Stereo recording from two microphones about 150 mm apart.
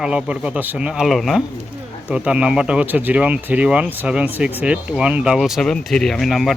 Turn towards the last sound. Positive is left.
turn(degrees=0)  # may be behind; listen again after turning